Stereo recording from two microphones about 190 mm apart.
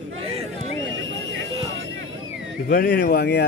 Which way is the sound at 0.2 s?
30° right (ahead or behind).